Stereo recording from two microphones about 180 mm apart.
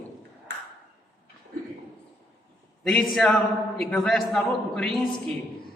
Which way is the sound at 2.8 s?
Centre (ahead or behind).